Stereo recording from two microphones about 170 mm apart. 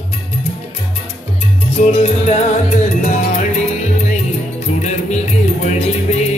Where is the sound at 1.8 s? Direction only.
40° left (ahead or behind).